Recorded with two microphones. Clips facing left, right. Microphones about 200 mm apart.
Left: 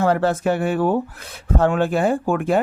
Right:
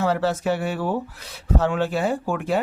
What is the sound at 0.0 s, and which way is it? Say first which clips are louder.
Speech: left 4 dB; 55° left (ahead or behind).